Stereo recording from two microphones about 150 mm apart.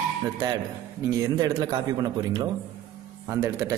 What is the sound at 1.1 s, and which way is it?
Speech, 25° right (ahead or behind).